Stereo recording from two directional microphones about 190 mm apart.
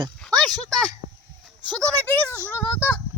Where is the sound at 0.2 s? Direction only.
5° left (ahead or behind).